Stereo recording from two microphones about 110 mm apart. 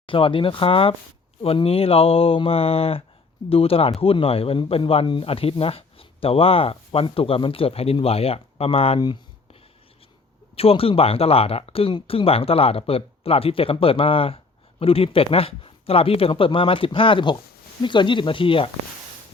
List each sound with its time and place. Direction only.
0.0 s speech: 55° left (ahead or behind)
10.5 s speech: 60° left (ahead or behind)